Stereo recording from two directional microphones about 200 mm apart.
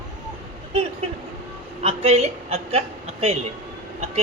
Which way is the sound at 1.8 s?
30° right (ahead or behind).